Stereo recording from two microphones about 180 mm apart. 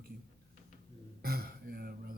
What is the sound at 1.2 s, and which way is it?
Speech, 60° right (ahead or behind).